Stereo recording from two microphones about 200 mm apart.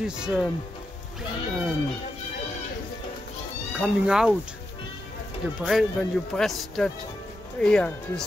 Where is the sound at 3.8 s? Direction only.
5° right (ahead or behind).